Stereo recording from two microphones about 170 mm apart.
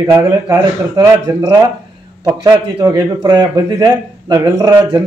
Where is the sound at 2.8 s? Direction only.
25° right (ahead or behind).